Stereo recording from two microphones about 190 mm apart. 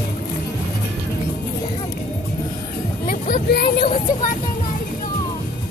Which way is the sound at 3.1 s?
50° left (ahead or behind).